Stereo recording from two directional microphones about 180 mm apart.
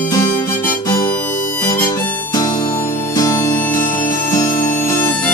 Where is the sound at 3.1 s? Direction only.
20° left (ahead or behind).